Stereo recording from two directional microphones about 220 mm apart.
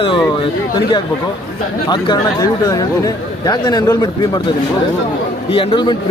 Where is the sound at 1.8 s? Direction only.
20° left (ahead or behind).